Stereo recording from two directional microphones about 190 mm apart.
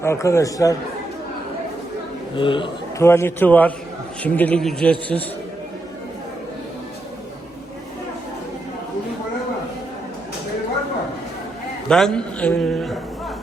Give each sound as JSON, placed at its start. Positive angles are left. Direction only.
{"t": 0.0, "sound": "a man's voice", "side_deg": 15}
{"t": 2.3, "sound": "a man's voice", "side_deg": 25}
{"t": 3.0, "sound": "a man's voice", "side_deg": 15}
{"t": 11.9, "sound": "a man's voice", "side_deg": 5}